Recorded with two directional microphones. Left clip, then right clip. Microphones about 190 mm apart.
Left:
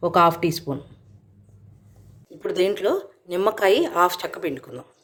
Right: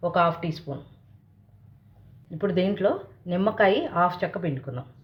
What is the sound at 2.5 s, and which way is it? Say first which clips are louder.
Speech: left 3 dB; 45° left (ahead or behind).